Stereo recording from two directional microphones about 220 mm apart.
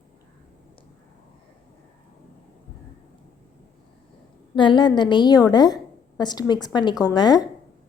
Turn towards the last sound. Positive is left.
turn(degrees=20)  # may be behind; listen again after turning